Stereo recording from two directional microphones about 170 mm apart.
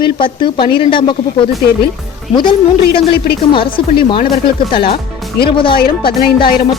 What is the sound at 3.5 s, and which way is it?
Speech, 30° left (ahead or behind).